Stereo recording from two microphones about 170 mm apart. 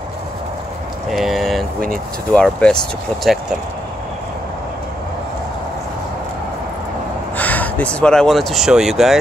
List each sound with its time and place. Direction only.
1.1 s a sound: centre (ahead or behind)
2.3 s speech: 5° left (ahead or behind)
7.3 s speech: 10° left (ahead or behind)